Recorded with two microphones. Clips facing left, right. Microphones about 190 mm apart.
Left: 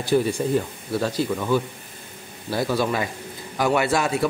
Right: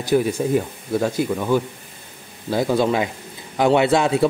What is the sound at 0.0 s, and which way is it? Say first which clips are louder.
A man's voice: right 2 dB; 15° right (ahead or behind).